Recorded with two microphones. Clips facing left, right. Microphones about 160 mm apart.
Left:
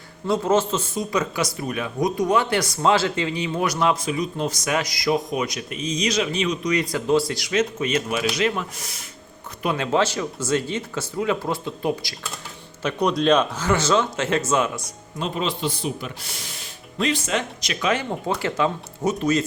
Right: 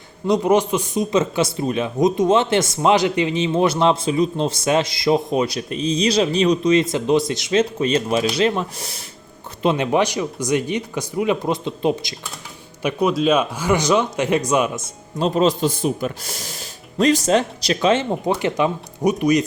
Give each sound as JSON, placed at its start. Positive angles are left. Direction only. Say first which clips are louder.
{"t": 0.3, "sound": "speech", "louder": "right 4 dB", "side_deg": -15}
{"t": 9.6, "sound": "speech", "louder": "right 4 dB", "side_deg": -20}
{"t": 12.8, "sound": "speech", "louder": "right 3 dB", "side_deg": -10}
{"t": 15.2, "sound": "speech", "louder": "right 8 dB", "side_deg": -40}